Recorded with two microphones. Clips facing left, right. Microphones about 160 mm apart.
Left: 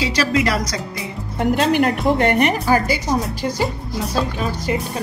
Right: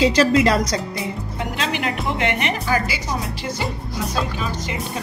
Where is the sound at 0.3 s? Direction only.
30° right (ahead or behind).